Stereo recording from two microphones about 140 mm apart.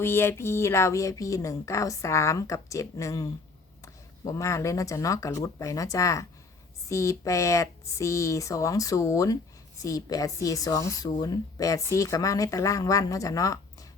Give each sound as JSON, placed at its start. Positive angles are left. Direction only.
{"t": 0.0, "sound": "speech", "side_deg": 15}
{"t": 4.3, "sound": "speech", "side_deg": 20}